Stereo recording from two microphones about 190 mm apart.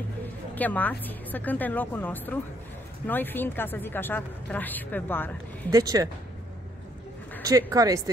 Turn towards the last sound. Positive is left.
turn(degrees=-20)  # may be behind; listen again after turning